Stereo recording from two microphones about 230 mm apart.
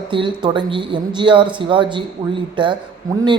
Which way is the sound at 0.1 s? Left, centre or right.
Right.